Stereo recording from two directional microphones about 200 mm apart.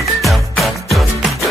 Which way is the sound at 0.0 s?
Centre (ahead or behind).